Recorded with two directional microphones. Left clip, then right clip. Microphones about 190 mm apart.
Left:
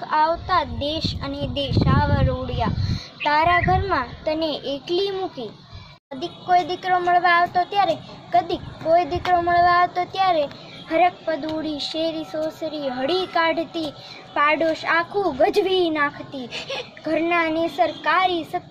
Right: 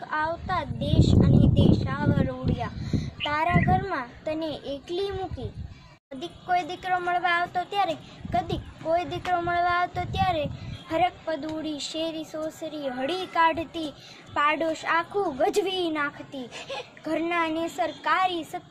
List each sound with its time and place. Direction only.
0.1 s speech: 10° left (ahead or behind)
16.5 s a child's voice: 45° left (ahead or behind)
17.0 s speech: 5° right (ahead or behind)